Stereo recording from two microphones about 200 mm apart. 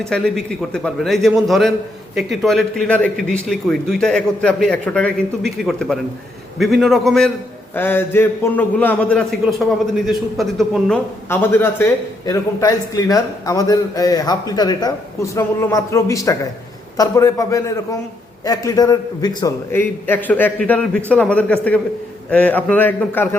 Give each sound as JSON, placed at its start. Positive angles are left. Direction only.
{"t": 0.0, "sound": "a man's voice", "side_deg": 5}
{"t": 9.4, "sound": "a man's voice", "side_deg": -5}